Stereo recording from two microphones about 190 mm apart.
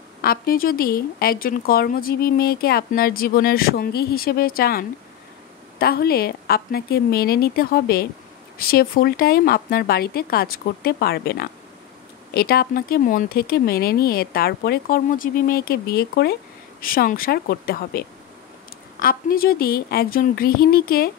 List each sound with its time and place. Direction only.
0.2 s a woman's voice: 50° left (ahead or behind)